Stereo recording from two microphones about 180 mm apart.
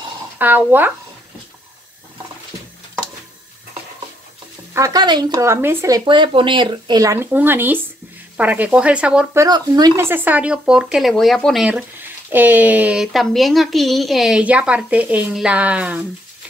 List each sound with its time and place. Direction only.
0.4 s speech: 10° right (ahead or behind)
4.7 s speech: 20° right (ahead or behind)
9.4 s speech: 20° right (ahead or behind)